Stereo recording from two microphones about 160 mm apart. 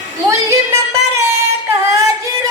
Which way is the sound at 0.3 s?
20° right (ahead or behind).